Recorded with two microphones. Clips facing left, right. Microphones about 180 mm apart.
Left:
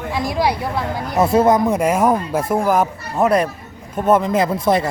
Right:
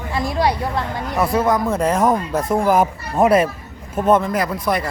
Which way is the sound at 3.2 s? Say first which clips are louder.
Right 1 dB; 15° right (ahead or behind).